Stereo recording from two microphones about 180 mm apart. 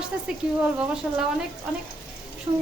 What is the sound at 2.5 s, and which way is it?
Speech, 25° right (ahead or behind).